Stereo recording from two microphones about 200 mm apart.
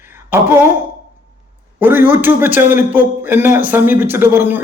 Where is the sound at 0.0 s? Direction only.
10° right (ahead or behind).